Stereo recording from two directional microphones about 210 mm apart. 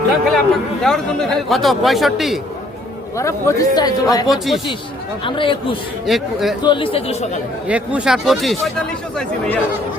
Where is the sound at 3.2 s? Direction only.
15° left (ahead or behind).